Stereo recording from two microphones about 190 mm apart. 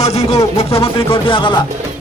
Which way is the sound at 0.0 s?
35° left (ahead or behind).